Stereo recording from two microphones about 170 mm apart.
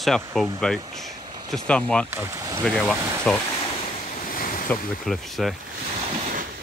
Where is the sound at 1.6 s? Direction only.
5° left (ahead or behind).